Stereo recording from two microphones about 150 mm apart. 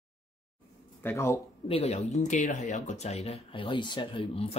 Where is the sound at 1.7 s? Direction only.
45° left (ahead or behind).